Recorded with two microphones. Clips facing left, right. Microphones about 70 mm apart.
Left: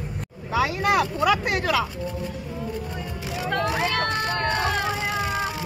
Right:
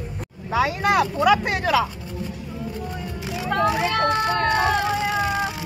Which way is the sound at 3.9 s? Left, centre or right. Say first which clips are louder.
Right 4 dB; centre.